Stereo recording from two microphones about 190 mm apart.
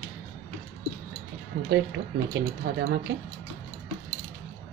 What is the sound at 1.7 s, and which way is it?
A woman's voice, 75° right (ahead or behind).